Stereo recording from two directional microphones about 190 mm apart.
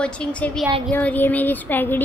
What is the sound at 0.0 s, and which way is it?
A woman's voice, 5° left (ahead or behind).